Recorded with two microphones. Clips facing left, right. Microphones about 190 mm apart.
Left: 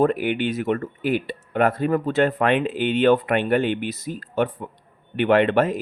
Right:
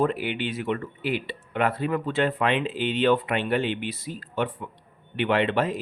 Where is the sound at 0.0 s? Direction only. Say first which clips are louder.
Left 5 dB; 50° left (ahead or behind).